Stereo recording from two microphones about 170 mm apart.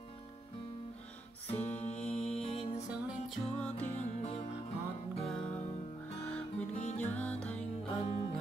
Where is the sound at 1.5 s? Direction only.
40° left (ahead or behind).